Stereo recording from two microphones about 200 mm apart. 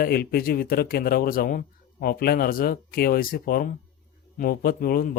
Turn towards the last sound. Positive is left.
turn(degrees=45)  # may be behind; listen again after turning